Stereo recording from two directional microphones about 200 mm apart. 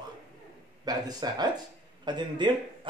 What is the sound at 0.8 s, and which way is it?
Speech, 20° right (ahead or behind).